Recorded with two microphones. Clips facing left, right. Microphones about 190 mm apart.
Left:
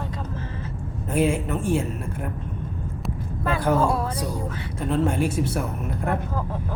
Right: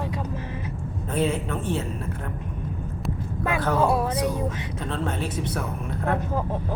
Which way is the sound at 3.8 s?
20° right (ahead or behind).